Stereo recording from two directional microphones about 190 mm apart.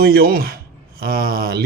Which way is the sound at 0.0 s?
50° right (ahead or behind).